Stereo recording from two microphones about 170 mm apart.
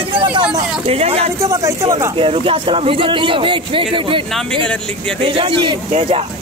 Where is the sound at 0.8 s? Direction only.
35° right (ahead or behind).